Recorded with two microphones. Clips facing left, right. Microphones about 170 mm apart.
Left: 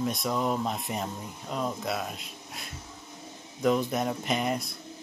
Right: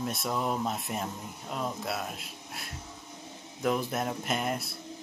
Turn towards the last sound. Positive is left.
turn(degrees=0)  # may be behind; listen again after turning